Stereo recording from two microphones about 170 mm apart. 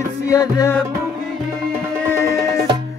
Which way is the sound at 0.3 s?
20° left (ahead or behind).